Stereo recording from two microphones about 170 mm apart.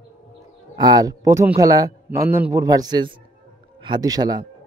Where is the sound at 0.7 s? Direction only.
25° right (ahead or behind).